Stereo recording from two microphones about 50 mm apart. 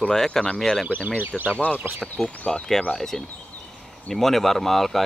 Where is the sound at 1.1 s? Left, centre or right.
Right.